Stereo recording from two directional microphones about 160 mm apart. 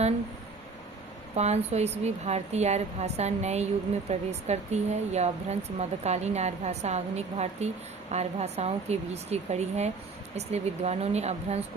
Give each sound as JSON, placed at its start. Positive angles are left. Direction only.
{"t": 1.4, "sound": "speech", "side_deg": -45}